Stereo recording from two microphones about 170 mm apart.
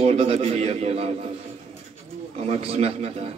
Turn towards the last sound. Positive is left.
turn(degrees=-40)  # may be behind; listen again after turning